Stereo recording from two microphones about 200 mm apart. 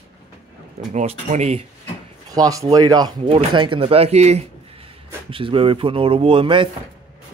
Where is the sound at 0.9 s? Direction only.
35° right (ahead or behind).